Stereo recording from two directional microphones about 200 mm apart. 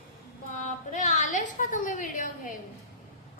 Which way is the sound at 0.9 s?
40° left (ahead or behind).